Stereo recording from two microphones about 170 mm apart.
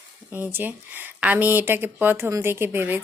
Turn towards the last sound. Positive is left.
turn(degrees=-10)  # may be behind; listen again after turning